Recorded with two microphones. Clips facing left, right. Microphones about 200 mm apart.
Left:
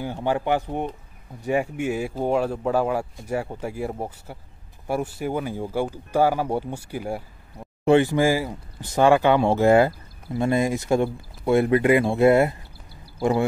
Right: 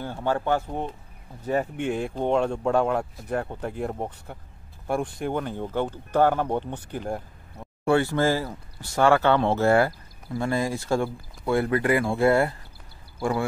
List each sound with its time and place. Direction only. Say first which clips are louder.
0.0 s speech: left 2 dB; 15° left (ahead or behind)
7.8 s speech: left 4 dB; 20° left (ahead or behind)